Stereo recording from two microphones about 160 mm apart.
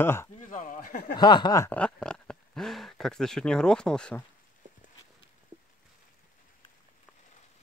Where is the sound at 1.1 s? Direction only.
25° left (ahead or behind).